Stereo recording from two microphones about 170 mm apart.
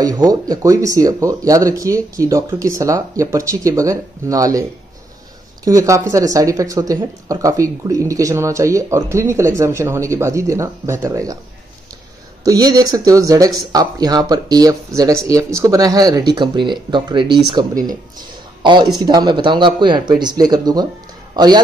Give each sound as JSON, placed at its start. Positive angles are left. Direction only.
{"t": 0.0, "sound": "speech", "side_deg": -20}
{"t": 12.4, "sound": "a man's voice", "side_deg": -20}